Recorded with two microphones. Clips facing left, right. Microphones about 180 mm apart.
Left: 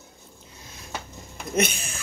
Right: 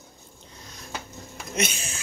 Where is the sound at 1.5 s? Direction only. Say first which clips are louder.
Left 4 dB; 55° left (ahead or behind).